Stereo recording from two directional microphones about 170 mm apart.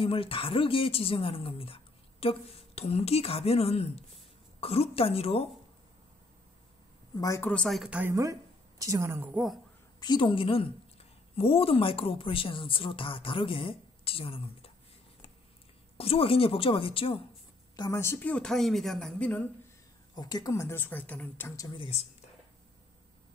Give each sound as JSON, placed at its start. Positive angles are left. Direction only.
{"t": 0.0, "sound": "a woman's voice", "side_deg": 35}
{"t": 7.2, "sound": "a woman's voice", "side_deg": 15}
{"t": 9.9, "sound": "a woman's voice", "side_deg": 25}
{"t": 16.0, "sound": "a woman's voice", "side_deg": 35}
{"t": 17.7, "sound": "a woman's voice", "side_deg": 15}
{"t": 20.2, "sound": "a woman's voice", "side_deg": 25}